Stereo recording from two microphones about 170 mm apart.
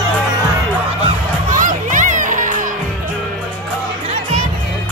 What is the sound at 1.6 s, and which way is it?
Music, 50° right (ahead or behind).